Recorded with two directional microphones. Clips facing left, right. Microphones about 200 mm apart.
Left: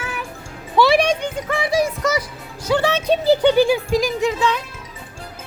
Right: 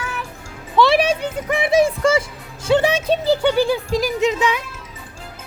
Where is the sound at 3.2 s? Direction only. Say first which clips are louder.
Left 4 dB; 15° left (ahead or behind).